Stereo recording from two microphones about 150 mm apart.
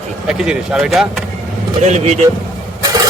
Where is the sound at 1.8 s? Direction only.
50° right (ahead or behind).